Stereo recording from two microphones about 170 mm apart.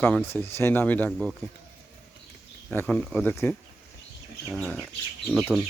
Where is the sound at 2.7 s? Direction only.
5° left (ahead or behind).